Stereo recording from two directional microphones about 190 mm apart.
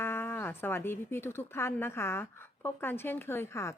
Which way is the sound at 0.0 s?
10° left (ahead or behind).